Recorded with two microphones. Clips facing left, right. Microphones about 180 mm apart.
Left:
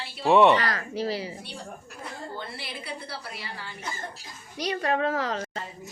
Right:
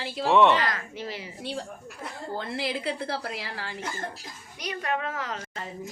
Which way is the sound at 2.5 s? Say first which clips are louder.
Right 8 dB; 90° right.